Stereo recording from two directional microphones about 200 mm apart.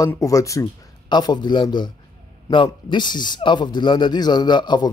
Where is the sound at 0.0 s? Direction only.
15° left (ahead or behind).